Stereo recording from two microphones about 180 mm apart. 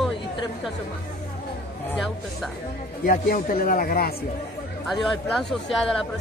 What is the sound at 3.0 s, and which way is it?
Speech, 55° left (ahead or behind).